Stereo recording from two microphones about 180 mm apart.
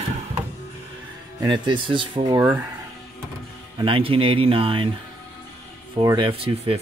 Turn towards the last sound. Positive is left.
turn(degrees=-30)  # may be behind; listen again after turning